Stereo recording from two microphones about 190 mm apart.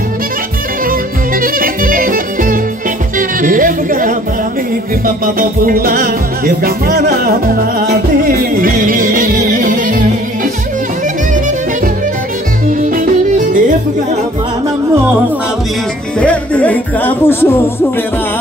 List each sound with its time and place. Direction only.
0.8 s music: 50° right (ahead or behind)
3.2 s speech: 45° right (ahead or behind)
5.0 s music: 50° right (ahead or behind)
12.9 s music: 45° right (ahead or behind)
16.2 s music: 5° left (ahead or behind)